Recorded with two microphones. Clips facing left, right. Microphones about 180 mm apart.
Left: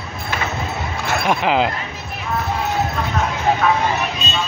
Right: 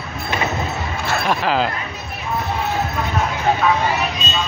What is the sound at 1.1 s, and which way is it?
Speech, 15° left (ahead or behind).